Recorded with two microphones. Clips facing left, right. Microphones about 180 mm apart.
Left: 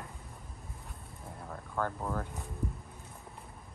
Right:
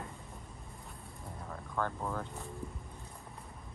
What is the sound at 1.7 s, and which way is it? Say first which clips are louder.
Speech: left 1 dB; 5° left (ahead or behind).